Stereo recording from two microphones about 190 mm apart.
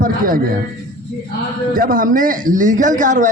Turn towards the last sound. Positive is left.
turn(degrees=-40)  # may be behind; listen again after turning